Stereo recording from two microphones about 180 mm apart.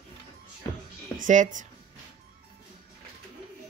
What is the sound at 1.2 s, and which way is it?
Speech, 45° right (ahead or behind).